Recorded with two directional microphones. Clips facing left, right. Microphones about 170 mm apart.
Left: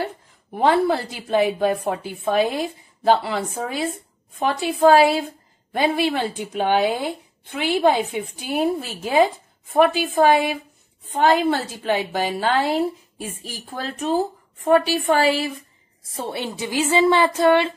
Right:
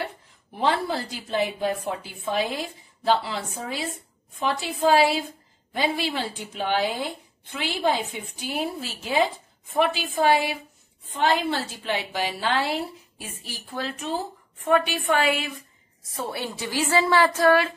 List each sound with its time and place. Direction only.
0.6 s a woman's voice: 55° left (ahead or behind); by 17.7 s 25° left (ahead or behind)